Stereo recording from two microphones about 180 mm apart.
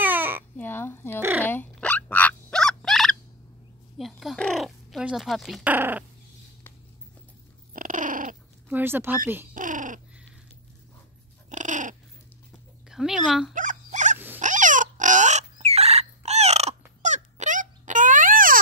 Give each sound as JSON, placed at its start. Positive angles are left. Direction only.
{"t": 0.0, "sound": "babbling", "side_deg": -10}
{"t": 0.6, "sound": "a sound", "side_deg": 10}
{"t": 1.4, "sound": "fowl", "side_deg": 10}
{"t": 4.0, "sound": "crow", "side_deg": 0}
{"t": 7.7, "sound": "cat", "side_deg": -50}
{"t": 8.6, "sound": "speech", "side_deg": -10}
{"t": 9.5, "sound": "a sound", "side_deg": -45}
{"t": 11.5, "sound": "dog", "side_deg": -45}
{"t": 12.9, "sound": "speech", "side_deg": -5}
{"t": 13.6, "sound": "dog", "side_deg": -45}
{"t": 14.1, "sound": "a sound", "side_deg": -10}
{"t": 14.4, "sound": "fowl", "side_deg": -45}